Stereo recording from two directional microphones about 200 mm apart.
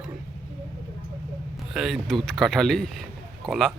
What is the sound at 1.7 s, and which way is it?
Speech, centre (ahead or behind).